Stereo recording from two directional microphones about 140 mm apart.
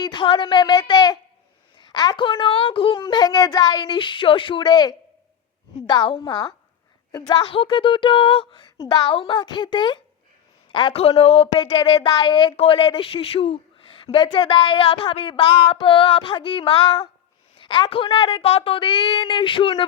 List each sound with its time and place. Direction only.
0.0 s a woman's voice: 35° left (ahead or behind)
7.4 s a man's voice: 40° left (ahead or behind)
11.5 s speech: 30° left (ahead or behind)
17.6 s speech: 35° left (ahead or behind)